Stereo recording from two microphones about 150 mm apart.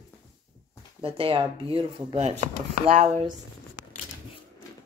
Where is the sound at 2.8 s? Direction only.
50° right (ahead or behind).